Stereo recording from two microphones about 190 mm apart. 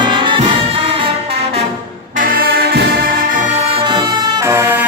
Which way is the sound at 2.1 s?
50° right (ahead or behind).